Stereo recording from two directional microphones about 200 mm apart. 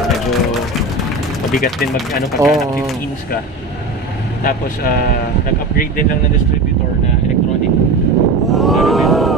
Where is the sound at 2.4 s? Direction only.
15° right (ahead or behind).